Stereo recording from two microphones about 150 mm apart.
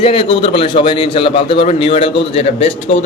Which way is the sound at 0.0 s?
35° left (ahead or behind).